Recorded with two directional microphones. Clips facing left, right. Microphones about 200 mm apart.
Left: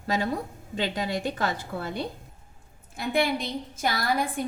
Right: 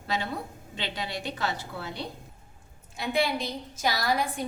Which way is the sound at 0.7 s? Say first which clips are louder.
Left 6 dB; 45° left (ahead or behind).